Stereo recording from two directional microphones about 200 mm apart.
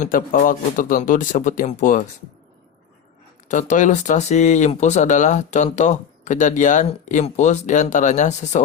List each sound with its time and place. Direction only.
0.0 s speech: 40° left (ahead or behind)
3.5 s speech: 40° left (ahead or behind)